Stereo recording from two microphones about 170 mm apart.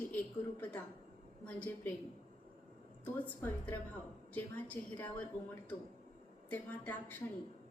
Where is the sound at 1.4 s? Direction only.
10° left (ahead or behind).